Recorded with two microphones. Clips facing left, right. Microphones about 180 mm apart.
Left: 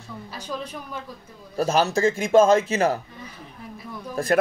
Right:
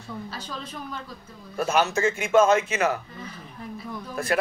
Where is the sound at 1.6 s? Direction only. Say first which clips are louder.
Left 2 dB; 35° left (ahead or behind).